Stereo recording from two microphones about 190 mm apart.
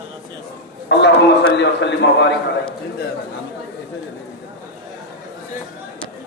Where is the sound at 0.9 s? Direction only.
70° left (ahead or behind).